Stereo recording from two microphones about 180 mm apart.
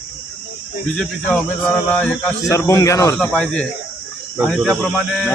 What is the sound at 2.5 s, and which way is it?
Speech, 15° left (ahead or behind).